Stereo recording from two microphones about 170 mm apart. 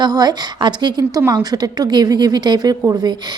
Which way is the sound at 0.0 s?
25° right (ahead or behind).